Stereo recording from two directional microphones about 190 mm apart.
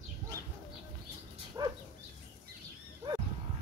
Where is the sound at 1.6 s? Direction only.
20° right (ahead or behind).